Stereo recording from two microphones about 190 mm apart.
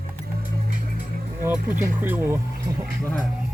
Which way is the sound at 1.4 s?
10° right (ahead or behind).